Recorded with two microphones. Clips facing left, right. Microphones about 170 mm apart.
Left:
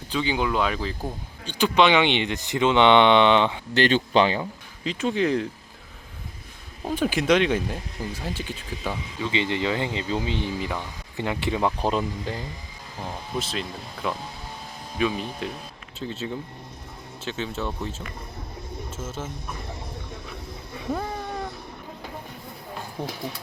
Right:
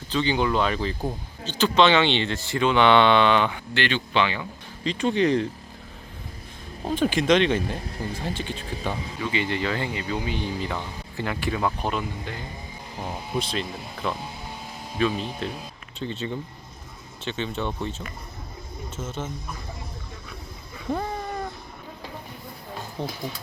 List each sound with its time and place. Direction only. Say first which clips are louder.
0.1 s speech: right 2 dB; 5° left (ahead or behind)
1.5 s speech: even; 15° left (ahead or behind)
3.8 s speech: left 5 dB; 40° left (ahead or behind)
4.8 s speech: right 2 dB; 5° left (ahead or behind)
6.9 s speech: right 1 dB; 10° left (ahead or behind)
8.8 s speech: left 1 dB; 10° right (ahead or behind)
9.3 s speech: left 2 dB; 20° left (ahead or behind)
13.0 s speech: right 2 dB; 10° right (ahead or behind)
13.4 s speech: right 1 dB; centre (ahead or behind)
20.9 s a sound: right 1 dB; centre (ahead or behind)
23.0 s speech: right 1 dB; 10° left (ahead or behind)